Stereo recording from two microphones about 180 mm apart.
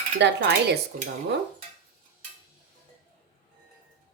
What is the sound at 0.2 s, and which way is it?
Speech, 70° right (ahead or behind).